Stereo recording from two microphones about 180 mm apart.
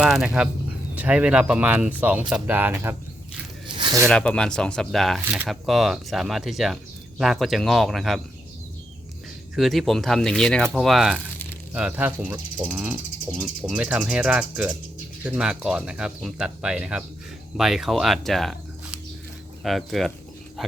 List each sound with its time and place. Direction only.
0.0 s speech: 5° right (ahead or behind)
3.7 s a sound: 25° right (ahead or behind)
4.1 s speech: 5° left (ahead or behind)
9.6 s speech: centre (ahead or behind)